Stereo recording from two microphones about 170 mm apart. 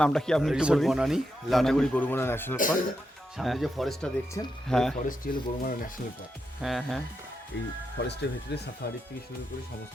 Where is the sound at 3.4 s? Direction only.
Centre (ahead or behind).